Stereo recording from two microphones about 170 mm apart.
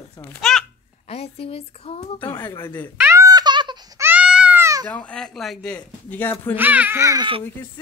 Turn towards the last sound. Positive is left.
turn(degrees=-25)  # may be behind; listen again after turning